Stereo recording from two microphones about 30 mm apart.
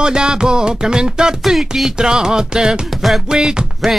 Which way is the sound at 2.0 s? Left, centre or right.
Right.